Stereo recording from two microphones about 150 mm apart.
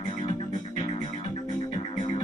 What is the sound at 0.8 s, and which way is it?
Music, 50° left (ahead or behind).